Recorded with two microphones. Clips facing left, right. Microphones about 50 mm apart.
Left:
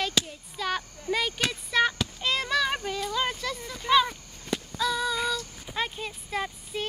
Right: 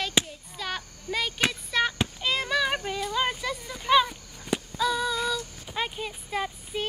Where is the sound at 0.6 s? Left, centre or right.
Centre.